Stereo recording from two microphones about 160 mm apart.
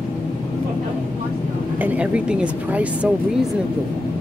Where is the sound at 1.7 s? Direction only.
10° right (ahead or behind).